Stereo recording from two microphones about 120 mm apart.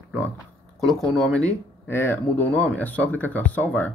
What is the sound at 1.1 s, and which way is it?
Speech, 10° left (ahead or behind).